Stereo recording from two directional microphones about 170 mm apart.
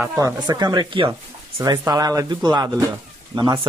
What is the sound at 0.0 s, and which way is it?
Speech, 10° right (ahead or behind).